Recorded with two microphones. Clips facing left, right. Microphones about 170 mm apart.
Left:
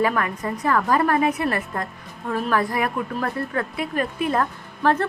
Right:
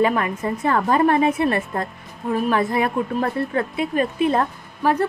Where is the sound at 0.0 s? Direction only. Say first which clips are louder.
Right 3 dB; 20° right (ahead or behind).